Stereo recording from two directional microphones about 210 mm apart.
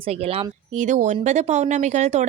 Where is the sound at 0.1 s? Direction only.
30° right (ahead or behind).